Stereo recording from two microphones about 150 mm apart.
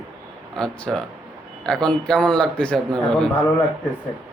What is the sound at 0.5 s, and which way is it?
Speech, 5° left (ahead or behind).